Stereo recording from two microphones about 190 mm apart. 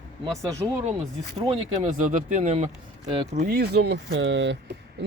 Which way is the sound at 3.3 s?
50° right (ahead or behind).